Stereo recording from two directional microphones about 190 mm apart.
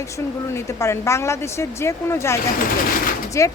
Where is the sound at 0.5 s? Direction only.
15° left (ahead or behind).